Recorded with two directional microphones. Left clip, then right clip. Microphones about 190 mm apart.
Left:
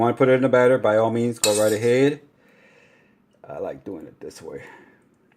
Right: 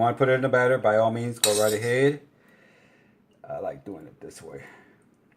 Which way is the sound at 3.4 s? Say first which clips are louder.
Left 2 dB; 45° left (ahead or behind).